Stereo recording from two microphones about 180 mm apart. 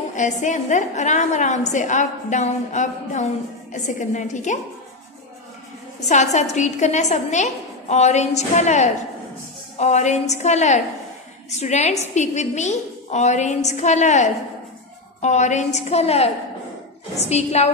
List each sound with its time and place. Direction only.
0.1 s a woman's voice: 45° left (ahead or behind)
5.9 s a woman's voice: 40° left (ahead or behind)